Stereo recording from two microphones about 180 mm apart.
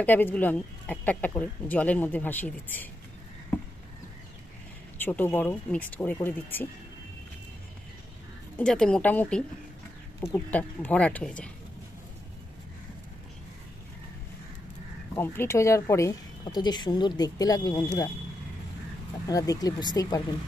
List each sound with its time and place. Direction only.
0.0 s speech: 10° left (ahead or behind)
4.9 s speech: 10° left (ahead or behind)
8.5 s speech: 5° left (ahead or behind)
15.1 s speech: 15° left (ahead or behind)
19.2 s speech: 20° left (ahead or behind)